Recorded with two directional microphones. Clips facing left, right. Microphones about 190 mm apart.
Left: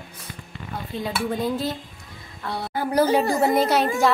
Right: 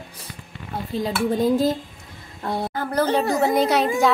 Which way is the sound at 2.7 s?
10° left (ahead or behind).